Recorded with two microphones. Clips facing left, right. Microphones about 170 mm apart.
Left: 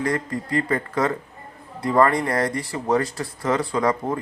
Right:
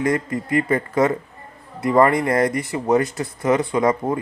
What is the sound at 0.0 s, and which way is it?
Speech, 20° right (ahead or behind).